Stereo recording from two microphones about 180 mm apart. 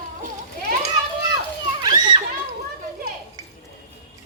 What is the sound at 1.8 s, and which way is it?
Children playing, 20° right (ahead or behind).